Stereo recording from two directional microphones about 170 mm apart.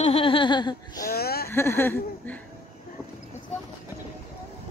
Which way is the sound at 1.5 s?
15° left (ahead or behind).